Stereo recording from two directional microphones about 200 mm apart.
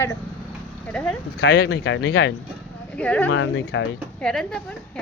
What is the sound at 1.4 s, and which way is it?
Speech, 50° left (ahead or behind).